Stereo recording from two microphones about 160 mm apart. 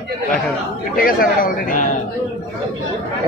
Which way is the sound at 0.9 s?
65° left (ahead or behind).